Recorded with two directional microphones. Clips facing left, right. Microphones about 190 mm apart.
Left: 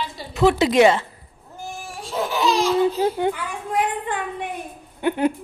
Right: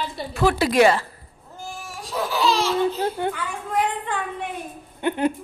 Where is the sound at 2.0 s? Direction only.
25° left (ahead or behind).